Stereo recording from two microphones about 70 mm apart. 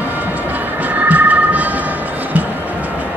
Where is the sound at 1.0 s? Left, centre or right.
Right.